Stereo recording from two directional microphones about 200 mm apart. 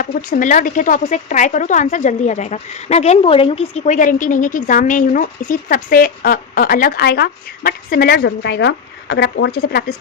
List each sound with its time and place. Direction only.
0.0 s speech: 45° left (ahead or behind)